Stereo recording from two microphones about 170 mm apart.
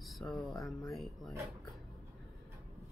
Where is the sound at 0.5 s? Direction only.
20° left (ahead or behind).